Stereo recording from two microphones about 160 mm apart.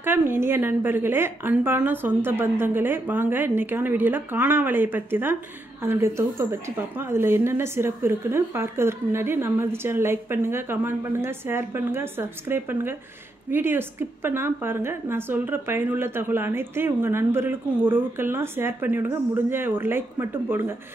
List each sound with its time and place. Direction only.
0.0 s speech: 15° right (ahead or behind)